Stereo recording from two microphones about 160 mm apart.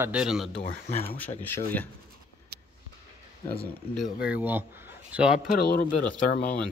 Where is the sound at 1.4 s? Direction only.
10° left (ahead or behind).